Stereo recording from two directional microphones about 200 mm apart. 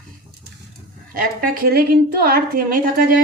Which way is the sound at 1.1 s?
45° right (ahead or behind).